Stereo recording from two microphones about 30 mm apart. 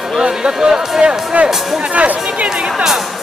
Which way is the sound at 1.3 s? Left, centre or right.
Right.